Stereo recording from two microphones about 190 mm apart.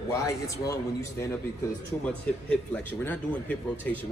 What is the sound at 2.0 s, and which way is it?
Speech, 5° left (ahead or behind).